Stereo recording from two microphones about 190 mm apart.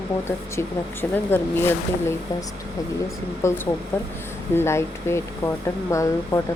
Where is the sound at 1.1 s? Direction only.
10° left (ahead or behind).